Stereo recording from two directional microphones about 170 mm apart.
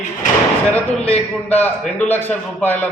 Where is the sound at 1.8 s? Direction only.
10° left (ahead or behind).